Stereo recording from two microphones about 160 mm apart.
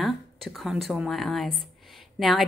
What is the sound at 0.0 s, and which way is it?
A woman's voice, centre (ahead or behind).